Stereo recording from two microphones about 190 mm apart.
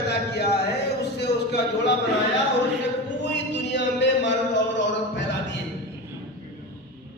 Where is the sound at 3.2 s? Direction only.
70° left (ahead or behind).